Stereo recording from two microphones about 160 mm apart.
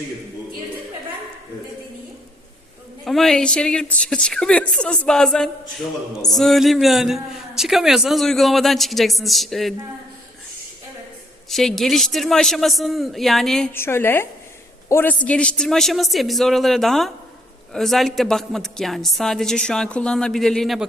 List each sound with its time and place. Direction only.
3.0 s a man's voice: centre (ahead or behind)
11.4 s a man's voice: centre (ahead or behind)
13.7 s a woman's voice: 15° left (ahead or behind)